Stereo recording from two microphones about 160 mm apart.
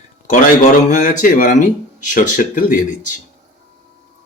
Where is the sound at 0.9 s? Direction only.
55° left (ahead or behind).